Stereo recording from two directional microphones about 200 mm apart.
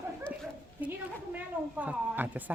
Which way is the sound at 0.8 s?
10° right (ahead or behind).